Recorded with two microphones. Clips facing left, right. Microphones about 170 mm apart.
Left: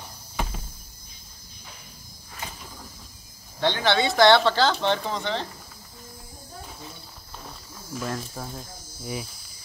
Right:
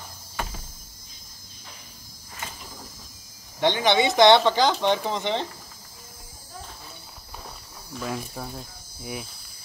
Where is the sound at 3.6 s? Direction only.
15° right (ahead or behind).